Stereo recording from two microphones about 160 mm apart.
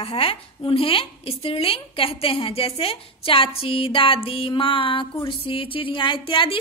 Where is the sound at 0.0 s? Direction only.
35° left (ahead or behind).